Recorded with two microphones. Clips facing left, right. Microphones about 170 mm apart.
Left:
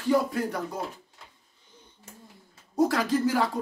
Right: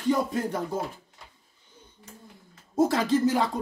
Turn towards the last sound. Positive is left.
turn(degrees=-20)  # may be behind; listen again after turning